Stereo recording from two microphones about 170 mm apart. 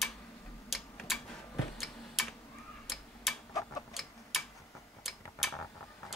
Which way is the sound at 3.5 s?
20° left (ahead or behind).